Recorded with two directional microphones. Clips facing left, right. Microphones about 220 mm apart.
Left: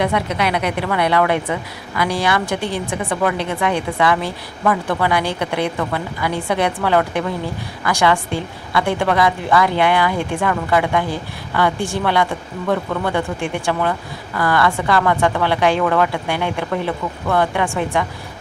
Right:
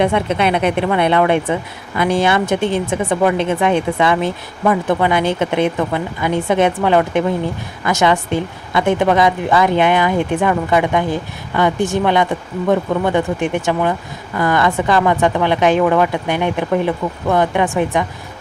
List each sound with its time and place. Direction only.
0.0 s speech: 25° right (ahead or behind)